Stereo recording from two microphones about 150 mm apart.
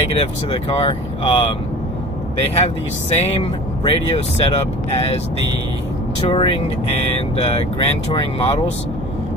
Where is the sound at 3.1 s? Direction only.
45° left (ahead or behind).